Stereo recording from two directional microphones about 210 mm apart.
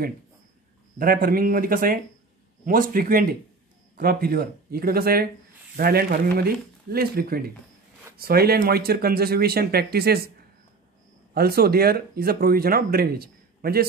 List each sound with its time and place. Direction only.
0.9 s speech: 40° right (ahead or behind)
11.3 s speech: 45° right (ahead or behind)